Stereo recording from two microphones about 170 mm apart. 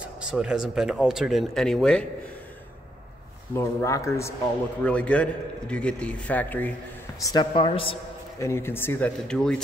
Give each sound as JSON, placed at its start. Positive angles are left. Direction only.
{"t": 0.0, "sound": "speech", "side_deg": -5}
{"t": 3.5, "sound": "a man's voice", "side_deg": 15}
{"t": 7.2, "sound": "speech", "side_deg": 25}
{"t": 8.4, "sound": "a man's voice", "side_deg": 15}